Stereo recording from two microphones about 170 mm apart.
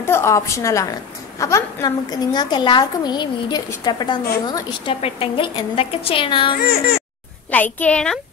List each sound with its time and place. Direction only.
0.0 s a woman's voice: 15° left (ahead or behind); by 6.5 s 30° left (ahead or behind)
6.6 s speech: 60° left (ahead or behind)
7.5 s a woman's voice: 10° left (ahead or behind)